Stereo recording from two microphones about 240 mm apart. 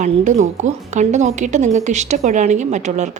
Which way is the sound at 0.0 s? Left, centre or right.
Right.